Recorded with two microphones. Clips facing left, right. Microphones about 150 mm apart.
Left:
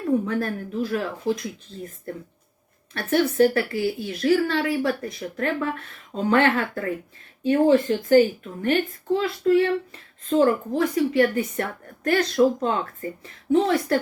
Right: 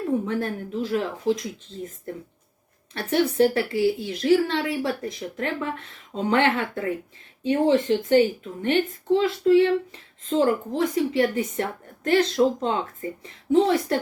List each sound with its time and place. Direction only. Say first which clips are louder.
0.3 s a woman's voice: left 1 dB; 25° right (ahead or behind)